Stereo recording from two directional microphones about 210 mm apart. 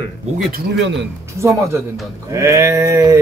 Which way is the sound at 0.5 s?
50° right (ahead or behind).